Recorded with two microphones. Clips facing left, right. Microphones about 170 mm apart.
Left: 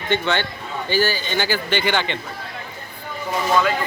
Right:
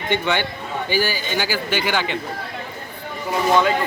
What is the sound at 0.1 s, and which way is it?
Speech, 15° right (ahead or behind).